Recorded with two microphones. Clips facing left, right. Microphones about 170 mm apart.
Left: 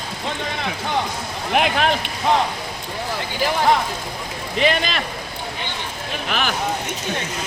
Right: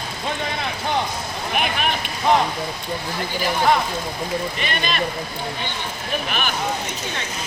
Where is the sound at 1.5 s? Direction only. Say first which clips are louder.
Left 5 dB; 90° left.